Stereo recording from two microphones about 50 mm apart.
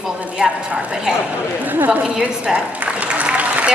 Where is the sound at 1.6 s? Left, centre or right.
Right.